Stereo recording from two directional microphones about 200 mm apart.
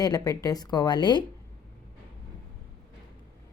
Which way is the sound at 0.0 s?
15° left (ahead or behind).